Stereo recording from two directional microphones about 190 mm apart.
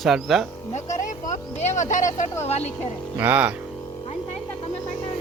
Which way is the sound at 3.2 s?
10° right (ahead or behind).